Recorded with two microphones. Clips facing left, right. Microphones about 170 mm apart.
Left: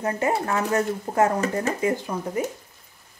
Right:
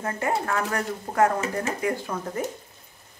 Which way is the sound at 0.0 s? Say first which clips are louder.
Left 3 dB; 20° left (ahead or behind).